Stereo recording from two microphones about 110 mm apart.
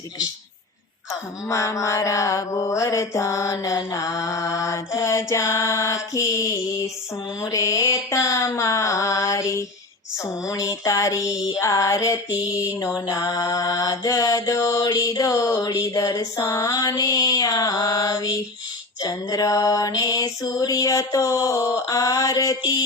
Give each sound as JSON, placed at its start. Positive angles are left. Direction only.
{"t": 1.5, "sound": "mantra", "side_deg": 30}
{"t": 12.5, "sound": "music", "side_deg": 30}